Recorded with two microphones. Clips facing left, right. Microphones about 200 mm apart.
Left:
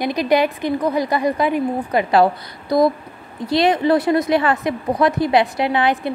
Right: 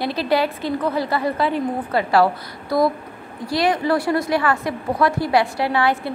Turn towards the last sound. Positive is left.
turn(degrees=20)  # may be behind; listen again after turning